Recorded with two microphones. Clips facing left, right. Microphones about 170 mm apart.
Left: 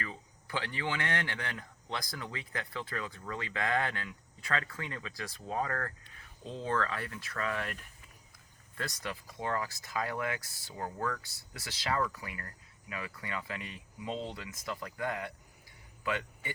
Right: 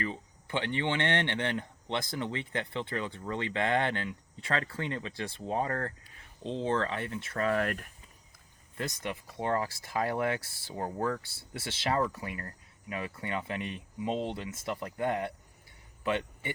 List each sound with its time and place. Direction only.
0.0 s speech: 25° right (ahead or behind); by 7.9 s 50° right (ahead or behind)
8.7 s a man's voice: 20° right (ahead or behind)